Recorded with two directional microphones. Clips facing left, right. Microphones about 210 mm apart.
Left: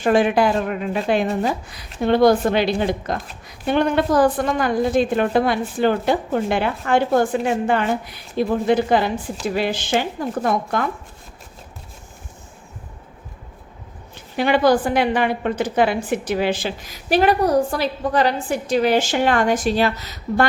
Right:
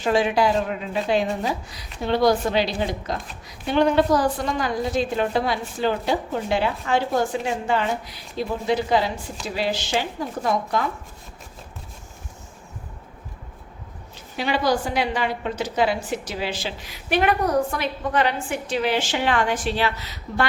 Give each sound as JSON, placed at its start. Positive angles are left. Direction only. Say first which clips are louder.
{"t": 0.0, "sound": "a woman's voice", "louder": "left 4 dB", "side_deg": 55}
{"t": 14.3, "sound": "a woman's voice", "louder": "left 6 dB", "side_deg": 55}